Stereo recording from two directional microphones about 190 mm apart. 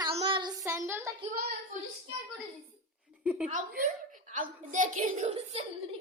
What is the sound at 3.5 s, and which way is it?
A woman's voice, 45° right (ahead or behind).